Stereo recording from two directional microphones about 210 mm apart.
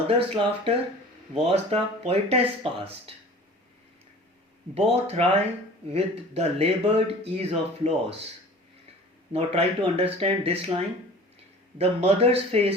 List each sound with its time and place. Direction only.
0.1 s speech: 25° right (ahead or behind)
4.7 s speech: 30° right (ahead or behind)
9.3 s speech: 30° right (ahead or behind)